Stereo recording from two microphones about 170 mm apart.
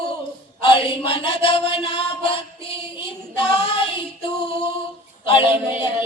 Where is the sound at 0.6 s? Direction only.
30° left (ahead or behind).